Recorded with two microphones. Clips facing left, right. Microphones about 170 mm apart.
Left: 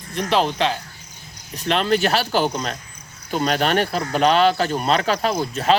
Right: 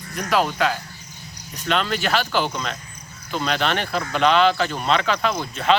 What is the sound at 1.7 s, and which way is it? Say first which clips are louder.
Speech: left 3 dB; 40° left (ahead or behind).